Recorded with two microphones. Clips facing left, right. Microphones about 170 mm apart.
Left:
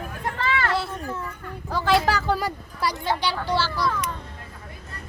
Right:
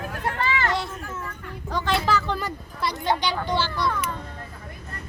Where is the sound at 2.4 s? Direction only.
10° left (ahead or behind).